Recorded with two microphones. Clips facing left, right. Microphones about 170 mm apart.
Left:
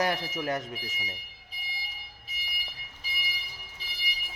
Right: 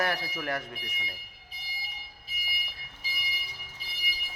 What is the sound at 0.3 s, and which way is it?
Speech, 20° left (ahead or behind).